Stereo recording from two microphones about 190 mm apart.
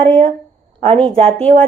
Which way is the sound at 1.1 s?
30° right (ahead or behind).